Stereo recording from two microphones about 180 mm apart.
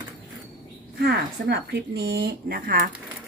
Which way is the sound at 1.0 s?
65° right (ahead or behind).